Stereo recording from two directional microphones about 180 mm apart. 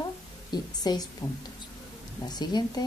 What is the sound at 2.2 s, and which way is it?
Speech, 20° left (ahead or behind).